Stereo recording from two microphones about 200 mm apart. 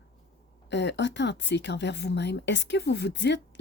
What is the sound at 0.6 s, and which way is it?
Speech, 60° left (ahead or behind).